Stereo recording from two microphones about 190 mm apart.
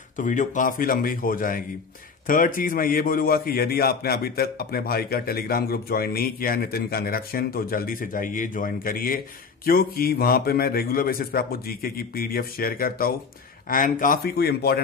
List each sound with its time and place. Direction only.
0.2 s a man's voice: 40° left (ahead or behind)